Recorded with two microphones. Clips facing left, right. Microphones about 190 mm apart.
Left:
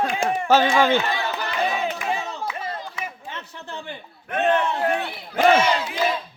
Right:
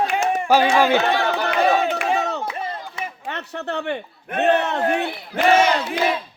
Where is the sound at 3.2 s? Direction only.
65° right (ahead or behind).